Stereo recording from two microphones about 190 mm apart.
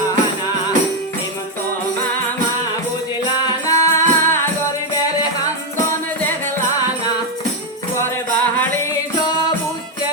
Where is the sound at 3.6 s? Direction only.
15° left (ahead or behind).